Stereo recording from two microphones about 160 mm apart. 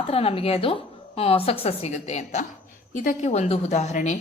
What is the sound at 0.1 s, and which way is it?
A woman's voice, 40° left (ahead or behind).